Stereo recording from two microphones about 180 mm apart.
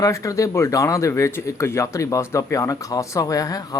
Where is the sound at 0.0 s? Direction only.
15° left (ahead or behind).